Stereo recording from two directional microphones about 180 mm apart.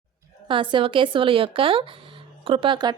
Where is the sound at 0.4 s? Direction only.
30° right (ahead or behind).